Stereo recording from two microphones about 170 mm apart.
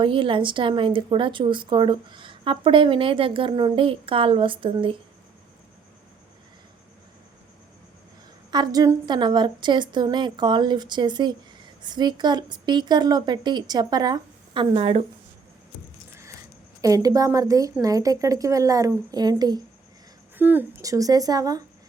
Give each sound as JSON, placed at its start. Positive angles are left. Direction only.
{"t": 0.0, "sound": "speech", "side_deg": -30}
{"t": 8.4, "sound": "speech", "side_deg": -25}
{"t": 16.8, "sound": "speech", "side_deg": -20}
{"t": 20.3, "sound": "speech", "side_deg": -10}